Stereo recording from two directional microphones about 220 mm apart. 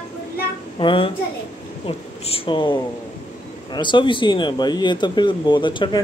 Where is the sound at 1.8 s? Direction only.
25° left (ahead or behind).